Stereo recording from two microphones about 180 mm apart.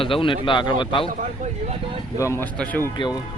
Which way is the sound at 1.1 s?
40° right (ahead or behind).